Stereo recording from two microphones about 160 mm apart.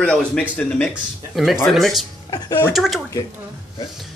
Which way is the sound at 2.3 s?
25° left (ahead or behind).